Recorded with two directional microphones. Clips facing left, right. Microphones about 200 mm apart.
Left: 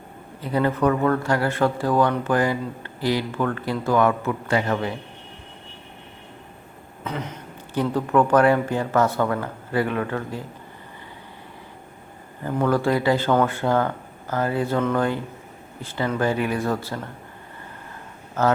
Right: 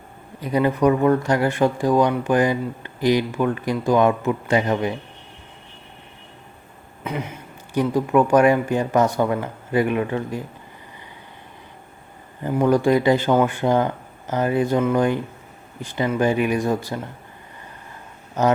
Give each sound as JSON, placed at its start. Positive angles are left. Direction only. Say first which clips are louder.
{"t": 0.3, "sound": "speech", "louder": "right 2 dB", "side_deg": -15}
{"t": 7.0, "sound": "speech", "louder": "right 2 dB", "side_deg": -10}
{"t": 12.4, "sound": "speech", "louder": "right 3 dB", "side_deg": -15}
{"t": 18.4, "sound": "speech", "louder": "right 2 dB", "side_deg": -15}